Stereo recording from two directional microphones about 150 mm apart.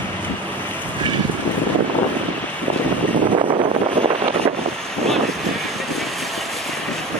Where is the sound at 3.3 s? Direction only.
35° right (ahead or behind).